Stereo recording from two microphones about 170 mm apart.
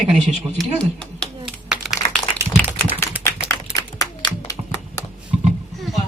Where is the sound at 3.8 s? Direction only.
20° left (ahead or behind).